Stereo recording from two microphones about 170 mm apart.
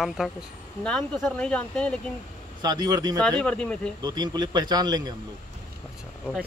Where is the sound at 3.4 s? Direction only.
5° left (ahead or behind).